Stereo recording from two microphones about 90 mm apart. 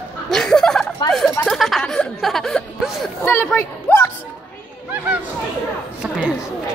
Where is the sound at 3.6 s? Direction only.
20° left (ahead or behind).